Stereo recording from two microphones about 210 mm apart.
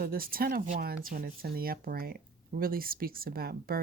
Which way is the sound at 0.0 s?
45° right (ahead or behind).